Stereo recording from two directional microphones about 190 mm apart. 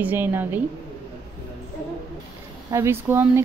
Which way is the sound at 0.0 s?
10° right (ahead or behind).